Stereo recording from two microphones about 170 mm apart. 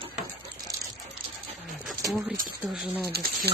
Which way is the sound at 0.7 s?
20° right (ahead or behind).